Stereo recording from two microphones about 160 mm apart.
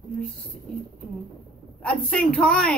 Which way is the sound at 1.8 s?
5° left (ahead or behind).